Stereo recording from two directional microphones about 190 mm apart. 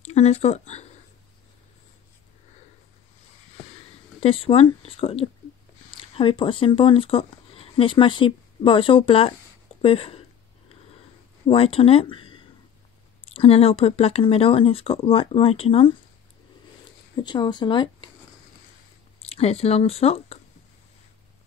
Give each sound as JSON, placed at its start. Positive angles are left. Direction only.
{"t": 0.0, "sound": "speech", "side_deg": 35}
{"t": 4.2, "sound": "speech", "side_deg": 30}
{"t": 11.4, "sound": "speech", "side_deg": 30}
{"t": 17.1, "sound": "speech", "side_deg": 25}
{"t": 19.2, "sound": "speech", "side_deg": 35}